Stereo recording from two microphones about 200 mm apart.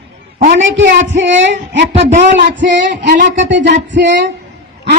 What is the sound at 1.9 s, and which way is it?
Speech, 35° right (ahead or behind).